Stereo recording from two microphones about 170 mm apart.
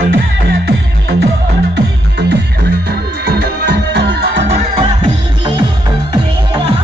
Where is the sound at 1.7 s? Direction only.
80° right.